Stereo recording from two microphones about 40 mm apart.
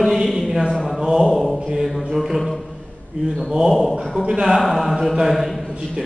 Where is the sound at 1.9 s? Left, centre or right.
Centre.